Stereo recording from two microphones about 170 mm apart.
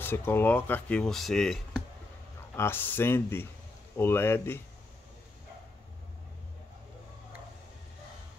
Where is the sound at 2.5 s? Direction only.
15° left (ahead or behind).